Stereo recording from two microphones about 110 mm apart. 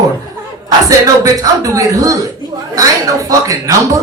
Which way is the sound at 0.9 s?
30° right (ahead or behind).